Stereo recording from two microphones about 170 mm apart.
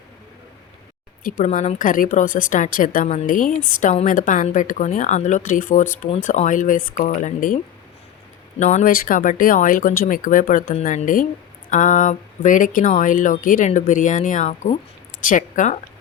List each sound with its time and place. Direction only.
1.2 s speech: 50° left (ahead or behind)